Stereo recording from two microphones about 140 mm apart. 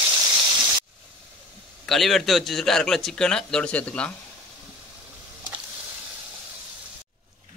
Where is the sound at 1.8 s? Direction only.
Centre (ahead or behind).